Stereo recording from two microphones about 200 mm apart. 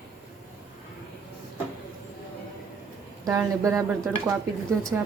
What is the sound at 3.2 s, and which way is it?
Speech, 15° right (ahead or behind).